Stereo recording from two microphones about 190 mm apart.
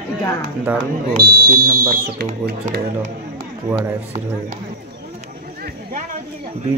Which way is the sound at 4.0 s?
35° right (ahead or behind).